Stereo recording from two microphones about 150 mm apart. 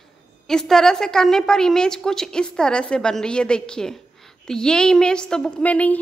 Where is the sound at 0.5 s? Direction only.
5° left (ahead or behind).